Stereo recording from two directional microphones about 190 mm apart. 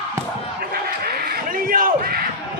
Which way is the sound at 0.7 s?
50° right (ahead or behind).